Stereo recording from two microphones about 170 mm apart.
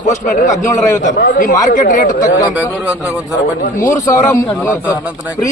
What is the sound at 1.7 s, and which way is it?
Speech, 50° left (ahead or behind).